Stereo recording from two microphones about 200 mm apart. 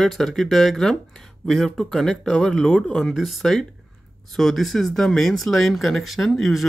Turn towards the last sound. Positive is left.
turn(degrees=0)  # may be behind; listen again after turning